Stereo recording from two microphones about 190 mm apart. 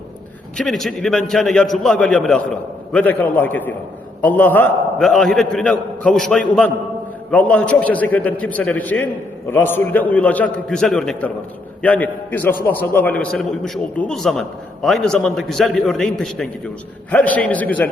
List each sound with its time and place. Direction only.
0.5 s a man's voice: centre (ahead or behind)